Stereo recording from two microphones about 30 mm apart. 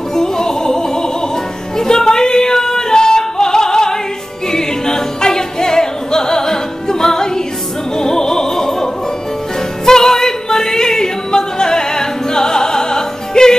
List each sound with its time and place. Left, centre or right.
0.1 s music: centre
1.8 s yodeling: left
4.5 s music: centre
8.0 s opera: centre
9.8 s yodeling: centre